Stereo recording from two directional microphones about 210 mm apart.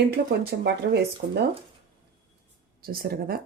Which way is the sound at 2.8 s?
45° right (ahead or behind).